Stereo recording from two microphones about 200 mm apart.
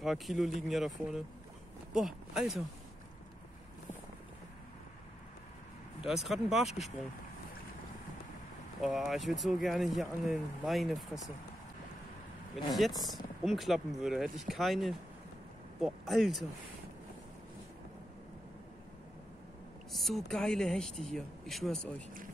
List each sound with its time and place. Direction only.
0.0 s speech: centre (ahead or behind)
5.9 s speech: centre (ahead or behind)
8.8 s speech: centre (ahead or behind)
12.9 s speech: 20° left (ahead or behind)
13.4 s speech: centre (ahead or behind)
19.9 s speech: centre (ahead or behind)